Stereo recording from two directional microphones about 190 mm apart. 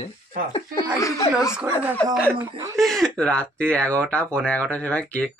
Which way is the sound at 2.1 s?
10° right (ahead or behind).